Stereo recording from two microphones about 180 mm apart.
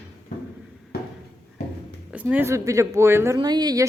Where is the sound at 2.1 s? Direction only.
10° right (ahead or behind).